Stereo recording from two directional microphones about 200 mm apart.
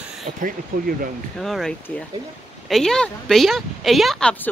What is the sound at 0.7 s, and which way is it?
Speech, 40° right (ahead or behind).